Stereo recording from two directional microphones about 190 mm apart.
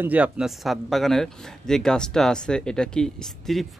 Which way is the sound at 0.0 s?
5° right (ahead or behind).